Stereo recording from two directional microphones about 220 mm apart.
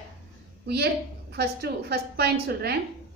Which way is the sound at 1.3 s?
45° right (ahead or behind).